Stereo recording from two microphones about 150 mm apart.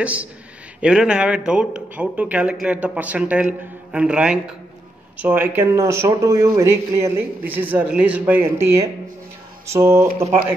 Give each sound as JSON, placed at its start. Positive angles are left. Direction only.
{"t": 0.0, "sound": "speech", "side_deg": -10}